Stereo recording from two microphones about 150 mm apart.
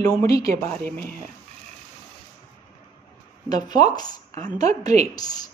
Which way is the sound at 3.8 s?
25° left (ahead or behind).